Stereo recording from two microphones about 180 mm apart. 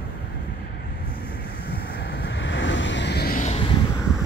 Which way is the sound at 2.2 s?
85° left.